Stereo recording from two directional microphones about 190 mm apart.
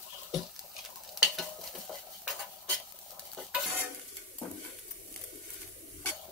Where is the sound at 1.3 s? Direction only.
Centre (ahead or behind).